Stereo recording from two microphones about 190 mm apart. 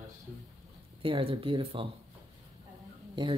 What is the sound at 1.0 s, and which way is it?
Speech, 25° right (ahead or behind).